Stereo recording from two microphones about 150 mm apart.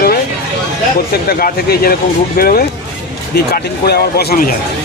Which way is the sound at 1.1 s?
90° left.